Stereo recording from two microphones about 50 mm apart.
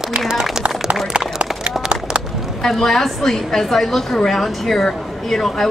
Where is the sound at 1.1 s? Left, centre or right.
Right.